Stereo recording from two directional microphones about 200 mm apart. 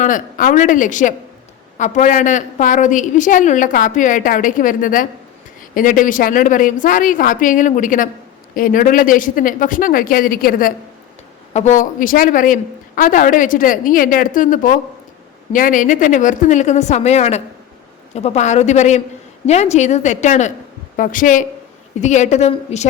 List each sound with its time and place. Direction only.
0.0 s a woman's voice: 40° left (ahead or behind)